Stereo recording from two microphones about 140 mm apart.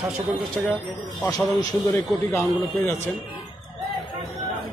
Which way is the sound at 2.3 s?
15° left (ahead or behind).